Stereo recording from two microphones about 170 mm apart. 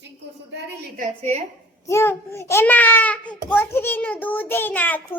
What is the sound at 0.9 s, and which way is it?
Speech, 45° right (ahead or behind).